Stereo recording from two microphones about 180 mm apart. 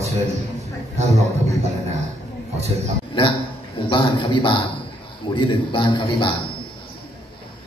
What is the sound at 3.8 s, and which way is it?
A man's voice, 25° left (ahead or behind).